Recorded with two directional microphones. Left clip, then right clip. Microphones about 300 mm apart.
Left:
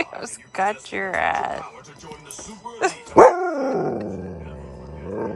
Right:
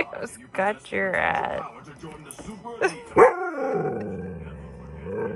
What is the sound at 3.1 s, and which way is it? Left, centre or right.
Dog, centre.